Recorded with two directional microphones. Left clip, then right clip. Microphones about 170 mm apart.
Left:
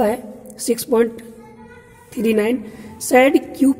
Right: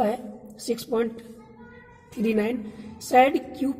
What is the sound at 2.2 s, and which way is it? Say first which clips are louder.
A woman's voice: left 7 dB; 15° left (ahead or behind).